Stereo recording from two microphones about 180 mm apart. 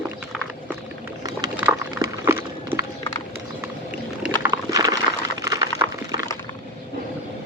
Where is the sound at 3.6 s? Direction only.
10° right (ahead or behind).